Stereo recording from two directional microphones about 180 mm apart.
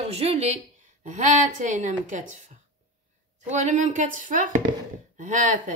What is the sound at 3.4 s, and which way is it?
Speech, 40° right (ahead or behind).